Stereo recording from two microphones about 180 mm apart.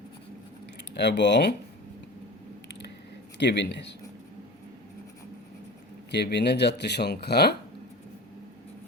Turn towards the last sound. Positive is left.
turn(degrees=65)  # may be behind; listen again after turning